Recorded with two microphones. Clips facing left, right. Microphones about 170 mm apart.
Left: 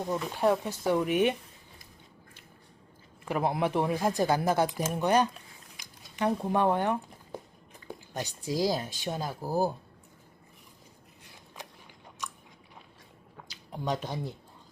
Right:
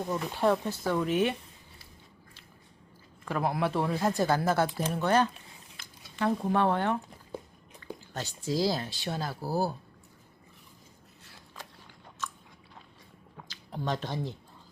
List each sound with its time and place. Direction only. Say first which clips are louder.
0.1 s speech: left 1 dB; 10° left (ahead or behind)
3.2 s speech: left 1 dB; 20° left (ahead or behind)
8.1 s speech: right 1 dB; 15° left (ahead or behind)
12.2 s biting: right 2 dB; 15° left (ahead or behind)
13.5 s speech: left 1 dB; 10° left (ahead or behind)